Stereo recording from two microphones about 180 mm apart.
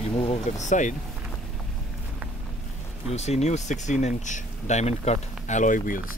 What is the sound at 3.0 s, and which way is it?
Speech, 35° left (ahead or behind).